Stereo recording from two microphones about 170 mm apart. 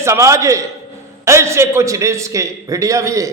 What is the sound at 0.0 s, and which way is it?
A man's voice, 15° right (ahead or behind).